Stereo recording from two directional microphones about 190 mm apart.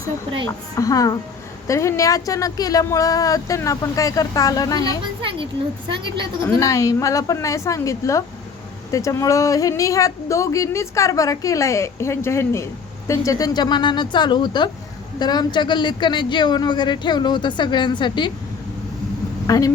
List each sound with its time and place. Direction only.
0.4 s speech: 20° left (ahead or behind)
5.2 s a woman's voice: 25° right (ahead or behind)
6.4 s speech: 15° left (ahead or behind)
19.5 s speech: 20° left (ahead or behind)